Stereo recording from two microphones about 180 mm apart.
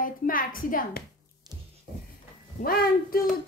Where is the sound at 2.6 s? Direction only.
55° left (ahead or behind).